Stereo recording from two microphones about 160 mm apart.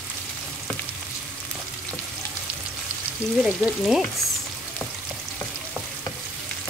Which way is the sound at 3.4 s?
5° right (ahead or behind).